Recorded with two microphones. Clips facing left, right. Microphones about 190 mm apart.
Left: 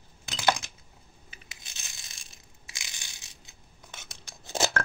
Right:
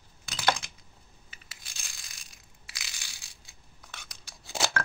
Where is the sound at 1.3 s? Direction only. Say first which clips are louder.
Left 2 dB; 20° left (ahead or behind).